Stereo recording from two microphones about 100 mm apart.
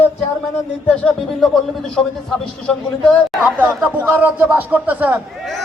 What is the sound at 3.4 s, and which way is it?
A man's voice, 15° right (ahead or behind).